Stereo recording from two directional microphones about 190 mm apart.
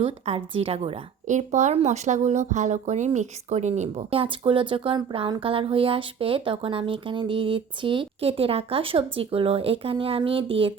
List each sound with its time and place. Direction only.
0.0 s a woman's voice: 30° right (ahead or behind)